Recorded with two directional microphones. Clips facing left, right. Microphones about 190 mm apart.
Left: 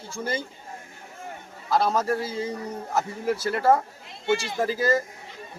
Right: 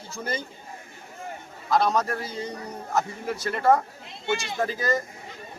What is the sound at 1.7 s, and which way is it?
Speech, 5° left (ahead or behind).